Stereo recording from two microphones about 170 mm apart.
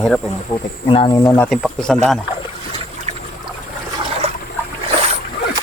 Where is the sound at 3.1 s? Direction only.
35° right (ahead or behind).